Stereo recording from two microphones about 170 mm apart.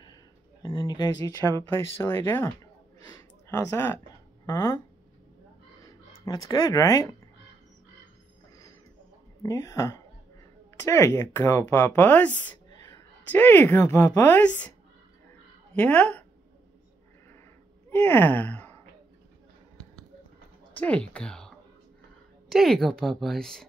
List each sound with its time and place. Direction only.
0.0 s a sound: 25° left (ahead or behind)
1.6 s speech: 15° left (ahead or behind)
5.9 s speech: 20° left (ahead or behind)
9.4 s speech: 20° left (ahead or behind)
12.6 s whispering: 20° left (ahead or behind)
13.3 s speech: 10° left (ahead or behind)
15.7 s speech: 10° left (ahead or behind)
17.8 s a sound: 10° left (ahead or behind)
20.7 s a woman's voice: 10° left (ahead or behind)